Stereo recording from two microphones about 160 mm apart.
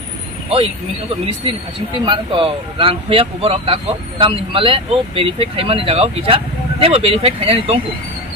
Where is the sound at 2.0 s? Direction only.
30° right (ahead or behind).